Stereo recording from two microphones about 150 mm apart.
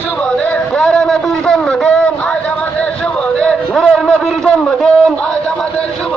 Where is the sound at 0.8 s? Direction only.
5° left (ahead or behind).